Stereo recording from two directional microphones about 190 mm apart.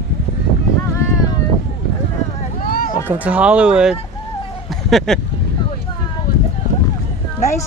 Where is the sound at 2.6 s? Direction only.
50° left (ahead or behind).